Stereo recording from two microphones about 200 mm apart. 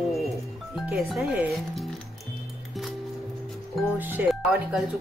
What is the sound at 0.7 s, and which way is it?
Speech, centre (ahead or behind).